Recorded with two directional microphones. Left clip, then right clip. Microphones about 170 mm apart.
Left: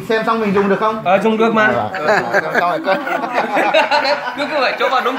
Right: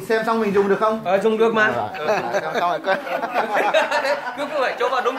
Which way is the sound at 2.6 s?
25° right (ahead or behind).